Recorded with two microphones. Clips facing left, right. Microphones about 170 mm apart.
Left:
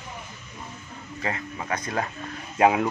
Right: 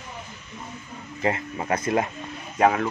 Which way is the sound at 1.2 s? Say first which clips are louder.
Right 6 dB; 30° right (ahead or behind).